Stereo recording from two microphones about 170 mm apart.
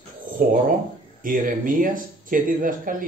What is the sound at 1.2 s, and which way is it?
Speech, 55° right (ahead or behind).